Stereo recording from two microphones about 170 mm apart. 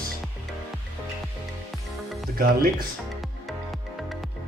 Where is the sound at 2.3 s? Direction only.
60° right (ahead or behind).